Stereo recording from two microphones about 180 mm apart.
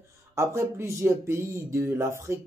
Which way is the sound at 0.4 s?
15° right (ahead or behind).